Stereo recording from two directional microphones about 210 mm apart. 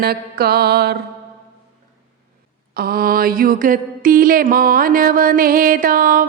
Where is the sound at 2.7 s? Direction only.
45° right (ahead or behind).